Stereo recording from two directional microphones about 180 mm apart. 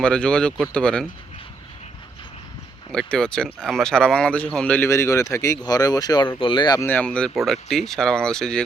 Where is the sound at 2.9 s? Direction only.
5° left (ahead or behind); by 6.9 s 25° left (ahead or behind).